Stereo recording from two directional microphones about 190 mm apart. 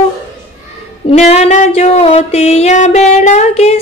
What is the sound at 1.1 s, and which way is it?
Music, 35° left (ahead or behind).